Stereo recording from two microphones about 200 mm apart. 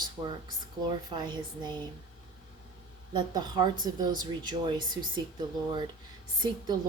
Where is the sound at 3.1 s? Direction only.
20° right (ahead or behind).